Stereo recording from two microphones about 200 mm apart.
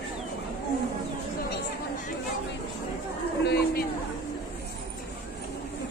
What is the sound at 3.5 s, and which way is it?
Chatter, 50° left (ahead or behind).